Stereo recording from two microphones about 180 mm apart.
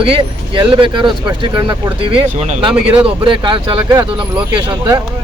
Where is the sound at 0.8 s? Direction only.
25° right (ahead or behind).